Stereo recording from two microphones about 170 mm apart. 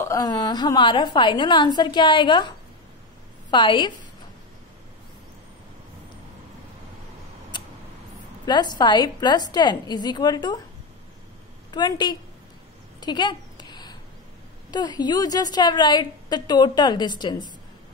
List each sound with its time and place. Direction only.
0.0 s a woman's voice: 20° left (ahead or behind)
3.4 s a woman's voice: 25° left (ahead or behind)
7.5 s a sound: 25° left (ahead or behind)
8.5 s a woman's voice: 25° left (ahead or behind)
11.7 s a woman's voice: 25° left (ahead or behind)
13.0 s a sound: 25° left (ahead or behind)
14.7 s a woman's voice: 25° left (ahead or behind)